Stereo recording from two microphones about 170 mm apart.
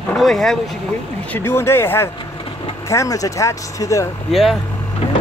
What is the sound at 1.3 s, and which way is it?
Speech, 15° left (ahead or behind).